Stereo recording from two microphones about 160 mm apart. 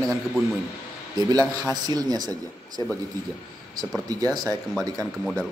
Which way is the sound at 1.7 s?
25° right (ahead or behind).